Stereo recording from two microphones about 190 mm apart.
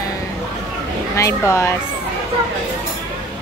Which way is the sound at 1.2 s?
15° left (ahead or behind).